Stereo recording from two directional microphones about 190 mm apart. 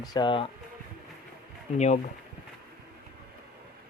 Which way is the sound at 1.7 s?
40° left (ahead or behind).